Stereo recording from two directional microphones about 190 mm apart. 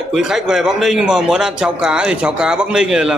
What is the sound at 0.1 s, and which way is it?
A man's voice, 5° right (ahead or behind).